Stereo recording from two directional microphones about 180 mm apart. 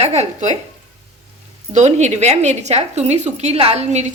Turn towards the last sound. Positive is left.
turn(degrees=-35)  # may be behind; listen again after turning